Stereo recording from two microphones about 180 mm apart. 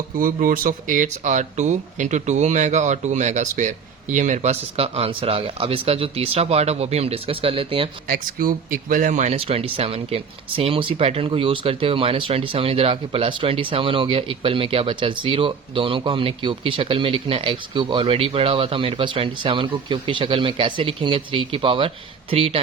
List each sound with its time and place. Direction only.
0.2 s speech: 50° right (ahead or behind); by 7.9 s 30° right (ahead or behind)
8.1 s speech: 50° right (ahead or behind); by 22.6 s 30° right (ahead or behind)